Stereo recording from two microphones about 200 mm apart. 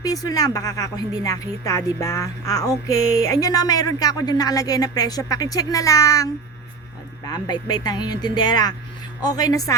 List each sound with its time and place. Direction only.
0.0 s speech: 20° left (ahead or behind)
7.3 s speech: 20° left (ahead or behind)